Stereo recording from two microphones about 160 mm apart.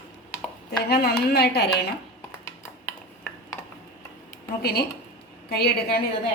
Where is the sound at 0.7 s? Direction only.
80° left.